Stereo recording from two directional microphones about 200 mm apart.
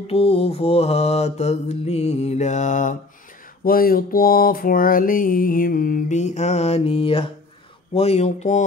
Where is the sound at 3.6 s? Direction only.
45° left (ahead or behind); by 7.3 s 25° left (ahead or behind).